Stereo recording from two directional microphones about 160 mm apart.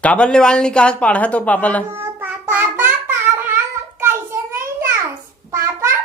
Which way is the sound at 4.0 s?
15° right (ahead or behind).